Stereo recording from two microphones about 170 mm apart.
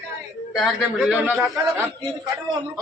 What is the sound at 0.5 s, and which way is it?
A man's voice, centre (ahead or behind).